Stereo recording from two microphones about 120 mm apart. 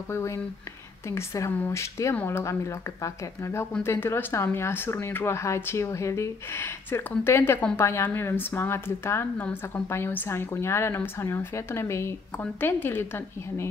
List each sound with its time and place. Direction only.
0.1 s a woman's voice: 20° left (ahead or behind)